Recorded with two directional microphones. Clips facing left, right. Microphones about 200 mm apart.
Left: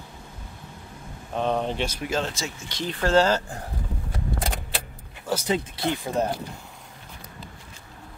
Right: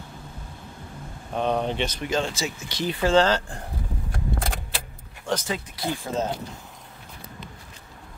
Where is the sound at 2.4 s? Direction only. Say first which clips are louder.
Right 3 dB; 10° right (ahead or behind).